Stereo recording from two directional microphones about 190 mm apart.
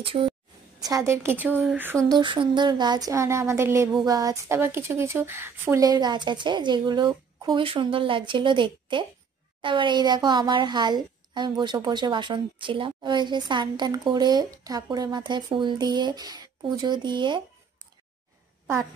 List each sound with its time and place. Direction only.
0.0 s a woman's voice: 30° right (ahead or behind)
0.8 s a woman's voice: 15° right (ahead or behind)
2.0 s a woman's voice: 25° right (ahead or behind)